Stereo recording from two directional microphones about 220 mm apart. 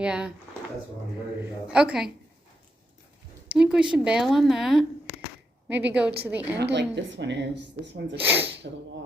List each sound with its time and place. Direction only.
0.0 s a woman's voice: 5° right (ahead or behind)
1.4 s a woman's voice: 5° right (ahead or behind)
3.5 s a woman's voice: 5° right (ahead or behind)
6.6 s speech: 50° right (ahead or behind)
8.2 s a woman's voice: 10° right (ahead or behind)
8.7 s speech: 45° right (ahead or behind)